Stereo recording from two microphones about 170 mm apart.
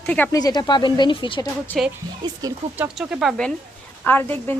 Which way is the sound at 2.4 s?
20° right (ahead or behind).